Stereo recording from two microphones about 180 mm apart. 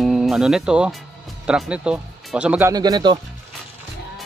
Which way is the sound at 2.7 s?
20° right (ahead or behind).